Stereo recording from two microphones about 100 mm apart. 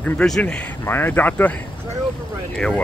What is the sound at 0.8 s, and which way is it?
Speech, 20° left (ahead or behind).